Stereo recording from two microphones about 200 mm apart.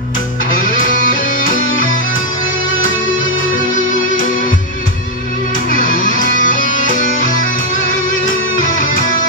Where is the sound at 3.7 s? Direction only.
40° left (ahead or behind).